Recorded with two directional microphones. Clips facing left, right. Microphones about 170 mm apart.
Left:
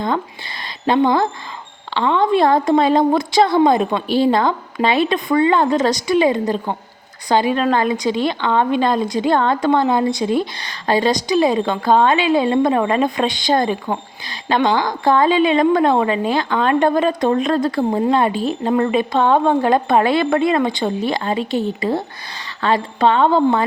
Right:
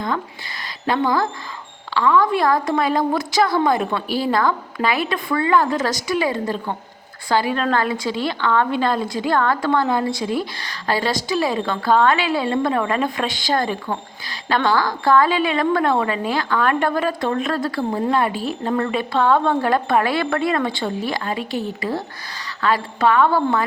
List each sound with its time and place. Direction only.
0.9 s speech: 25° left (ahead or behind)